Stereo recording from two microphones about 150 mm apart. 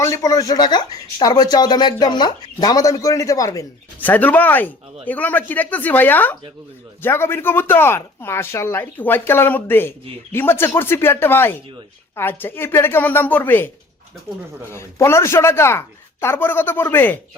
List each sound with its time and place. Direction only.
0.0 s speech: 25° left (ahead or behind)
4.1 s speech: 10° left (ahead or behind)
14.7 s speech: 15° left (ahead or behind)